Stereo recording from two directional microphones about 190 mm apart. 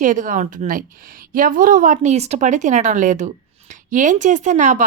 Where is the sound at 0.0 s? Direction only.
45° right (ahead or behind).